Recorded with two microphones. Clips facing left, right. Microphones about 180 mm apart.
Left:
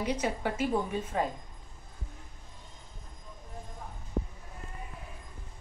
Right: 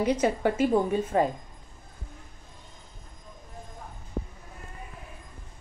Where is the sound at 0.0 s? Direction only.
50° right (ahead or behind).